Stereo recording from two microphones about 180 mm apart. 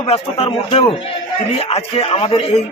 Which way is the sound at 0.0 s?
35° left (ahead or behind).